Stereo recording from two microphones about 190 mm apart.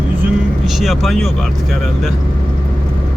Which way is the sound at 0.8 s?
Centre (ahead or behind).